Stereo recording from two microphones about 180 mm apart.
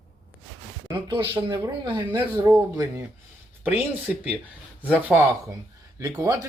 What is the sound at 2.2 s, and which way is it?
Speech, 10° right (ahead or behind).